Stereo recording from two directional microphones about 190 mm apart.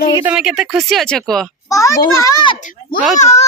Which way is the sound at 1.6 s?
15° left (ahead or behind).